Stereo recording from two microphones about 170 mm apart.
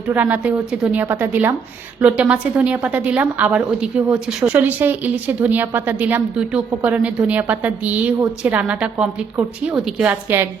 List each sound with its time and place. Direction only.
0.1 s a woman's voice: 10° right (ahead or behind)